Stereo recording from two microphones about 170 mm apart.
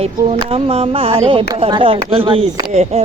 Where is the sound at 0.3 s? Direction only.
35° right (ahead or behind).